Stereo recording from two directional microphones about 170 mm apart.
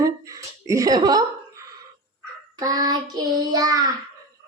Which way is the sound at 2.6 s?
20° right (ahead or behind).